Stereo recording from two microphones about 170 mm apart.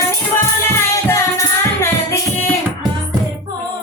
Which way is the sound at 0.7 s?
15° left (ahead or behind).